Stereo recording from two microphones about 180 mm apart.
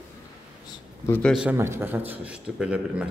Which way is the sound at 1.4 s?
15° right (ahead or behind).